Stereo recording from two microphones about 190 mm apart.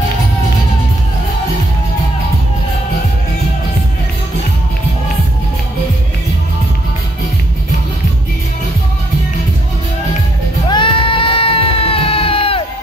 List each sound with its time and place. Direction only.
10.7 s crowd: 25° left (ahead or behind)